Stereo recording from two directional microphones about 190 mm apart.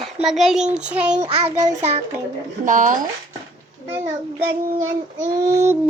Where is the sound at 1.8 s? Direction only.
35° right (ahead or behind).